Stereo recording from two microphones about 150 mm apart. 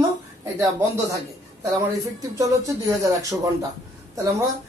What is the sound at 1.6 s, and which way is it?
Speech, 20° right (ahead or behind).